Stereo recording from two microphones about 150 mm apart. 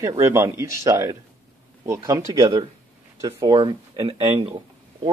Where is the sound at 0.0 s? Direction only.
20° right (ahead or behind).